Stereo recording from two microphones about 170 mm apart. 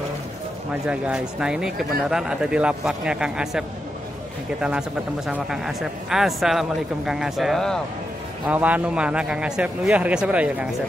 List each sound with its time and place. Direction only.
0.8 s speech: 5° right (ahead or behind)
8.5 s a man's voice: 10° right (ahead or behind)